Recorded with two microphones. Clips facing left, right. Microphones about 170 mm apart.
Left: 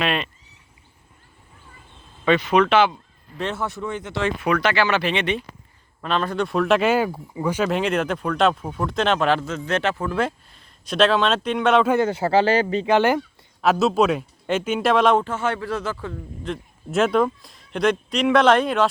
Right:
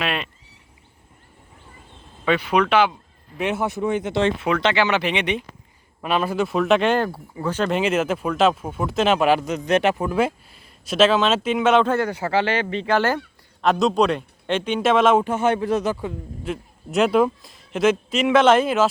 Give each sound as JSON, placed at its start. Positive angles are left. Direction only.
{"t": 0.0, "sound": "a sound", "side_deg": -5}
{"t": 2.2, "sound": "speech", "side_deg": -10}
{"t": 7.7, "sound": "speech", "side_deg": -5}
{"t": 11.9, "sound": "speech", "side_deg": 20}
{"t": 12.8, "sound": "speech", "side_deg": 15}
{"t": 13.6, "sound": "speech", "side_deg": 5}
{"t": 15.2, "sound": "speech", "side_deg": -20}